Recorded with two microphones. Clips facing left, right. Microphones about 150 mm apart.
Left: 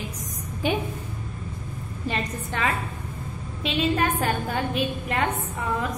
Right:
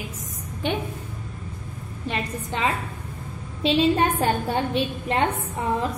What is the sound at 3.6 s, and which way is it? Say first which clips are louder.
A woman's voice: right 4 dB; 30° right (ahead or behind).